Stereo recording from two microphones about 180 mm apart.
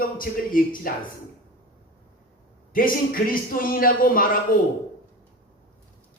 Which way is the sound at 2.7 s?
50° left (ahead or behind).